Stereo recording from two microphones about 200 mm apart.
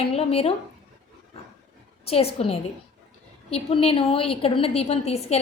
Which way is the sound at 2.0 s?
30° left (ahead or behind).